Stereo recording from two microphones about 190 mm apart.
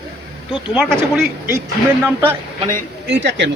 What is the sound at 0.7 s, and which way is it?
Speech, centre (ahead or behind).